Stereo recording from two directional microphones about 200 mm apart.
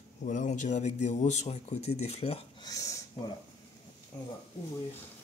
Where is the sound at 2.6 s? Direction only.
15° left (ahead or behind).